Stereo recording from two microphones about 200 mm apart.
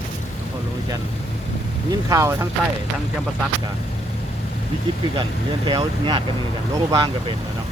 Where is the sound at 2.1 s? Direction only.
15° right (ahead or behind).